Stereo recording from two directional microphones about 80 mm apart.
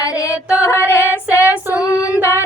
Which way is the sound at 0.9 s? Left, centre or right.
Right.